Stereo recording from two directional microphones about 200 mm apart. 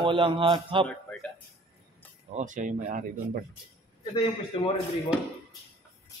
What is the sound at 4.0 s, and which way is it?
Speech, 20° left (ahead or behind).